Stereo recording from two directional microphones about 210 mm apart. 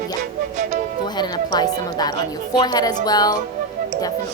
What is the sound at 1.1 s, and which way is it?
Speech, 20° left (ahead or behind).